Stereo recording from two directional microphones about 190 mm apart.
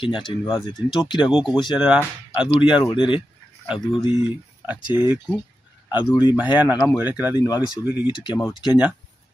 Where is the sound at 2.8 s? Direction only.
25° left (ahead or behind).